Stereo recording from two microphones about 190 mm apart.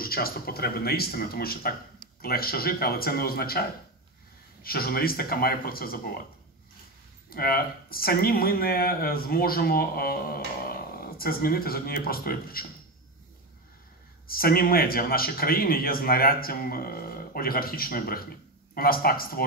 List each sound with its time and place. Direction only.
0.0 s a man's voice: 50° left (ahead or behind)
4.6 s a man's voice: 50° left (ahead or behind)
7.2 s a man's voice: 50° left (ahead or behind)
14.2 s a man's voice: 50° left (ahead or behind)